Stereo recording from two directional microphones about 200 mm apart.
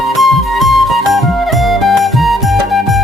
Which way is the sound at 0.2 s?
Centre (ahead or behind).